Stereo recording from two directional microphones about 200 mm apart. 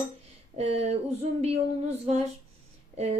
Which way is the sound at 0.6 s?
30° right (ahead or behind).